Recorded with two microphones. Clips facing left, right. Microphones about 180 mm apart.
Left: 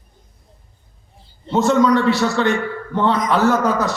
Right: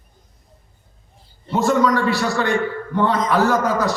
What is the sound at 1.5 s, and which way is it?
A man's voice, 20° left (ahead or behind).